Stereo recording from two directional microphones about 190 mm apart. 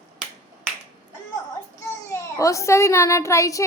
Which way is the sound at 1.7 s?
15° left (ahead or behind).